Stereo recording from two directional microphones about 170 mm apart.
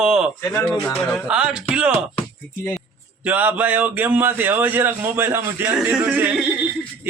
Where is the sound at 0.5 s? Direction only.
10° left (ahead or behind).